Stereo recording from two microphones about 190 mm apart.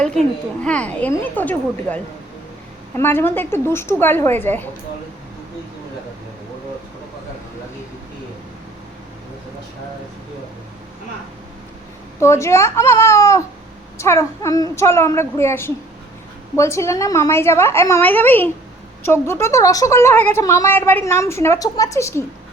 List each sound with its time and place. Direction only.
0.6 s a woman's voice: 5° left (ahead or behind)
12.2 s a woman's voice: 15° left (ahead or behind)